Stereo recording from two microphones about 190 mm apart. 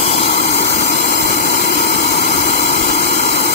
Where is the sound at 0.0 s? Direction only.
40° left (ahead or behind).